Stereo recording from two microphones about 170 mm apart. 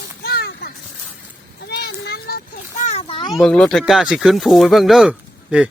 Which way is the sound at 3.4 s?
5° left (ahead or behind).